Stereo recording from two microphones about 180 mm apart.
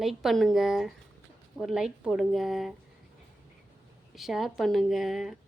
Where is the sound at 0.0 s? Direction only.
Centre (ahead or behind).